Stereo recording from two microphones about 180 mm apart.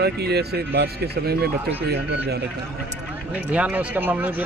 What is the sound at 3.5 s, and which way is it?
Speech, 5° right (ahead or behind).